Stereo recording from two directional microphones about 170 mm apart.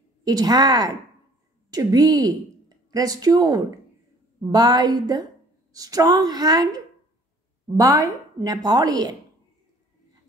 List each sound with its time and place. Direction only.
0.2 s a woman's voice: 25° right (ahead or behind)